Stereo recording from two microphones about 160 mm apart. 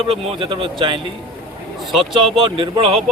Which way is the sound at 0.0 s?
35° right (ahead or behind).